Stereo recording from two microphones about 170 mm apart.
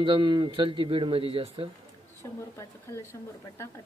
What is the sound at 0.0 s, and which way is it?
Speech, 30° right (ahead or behind).